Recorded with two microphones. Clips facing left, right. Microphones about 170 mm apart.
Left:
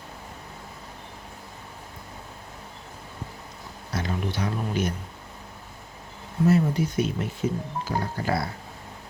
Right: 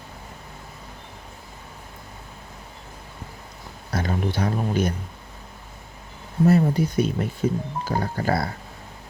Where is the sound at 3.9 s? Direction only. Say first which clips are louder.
Right 4 dB; 55° right (ahead or behind).